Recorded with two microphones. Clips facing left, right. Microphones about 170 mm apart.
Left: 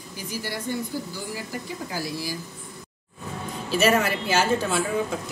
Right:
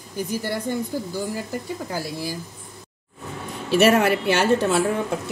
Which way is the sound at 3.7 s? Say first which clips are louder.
Right 5 dB; 65° right (ahead or behind).